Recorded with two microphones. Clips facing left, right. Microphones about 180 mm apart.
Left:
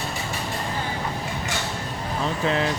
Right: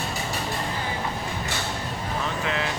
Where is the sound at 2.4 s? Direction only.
35° left (ahead or behind).